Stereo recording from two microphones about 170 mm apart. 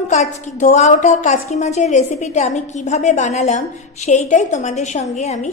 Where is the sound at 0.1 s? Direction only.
45° left (ahead or behind).